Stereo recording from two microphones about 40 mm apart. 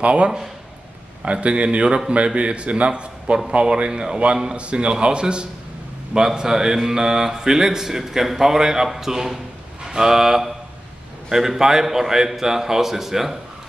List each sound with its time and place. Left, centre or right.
0.0 s a man's voice: right; by 13.4 s centre